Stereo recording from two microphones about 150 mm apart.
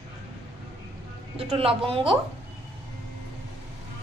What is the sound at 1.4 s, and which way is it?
Speech, 40° right (ahead or behind).